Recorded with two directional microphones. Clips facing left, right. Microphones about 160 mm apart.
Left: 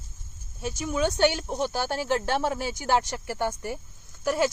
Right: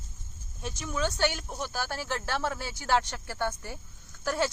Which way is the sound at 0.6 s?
10° left (ahead or behind).